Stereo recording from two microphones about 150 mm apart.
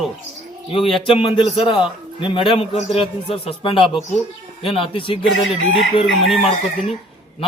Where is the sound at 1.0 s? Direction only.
35° left (ahead or behind).